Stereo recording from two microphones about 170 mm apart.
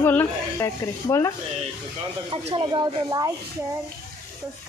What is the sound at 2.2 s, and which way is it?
Speech, 30° right (ahead or behind).